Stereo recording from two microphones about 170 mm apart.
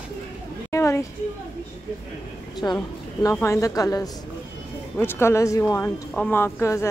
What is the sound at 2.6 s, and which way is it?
A woman's voice, 25° left (ahead or behind).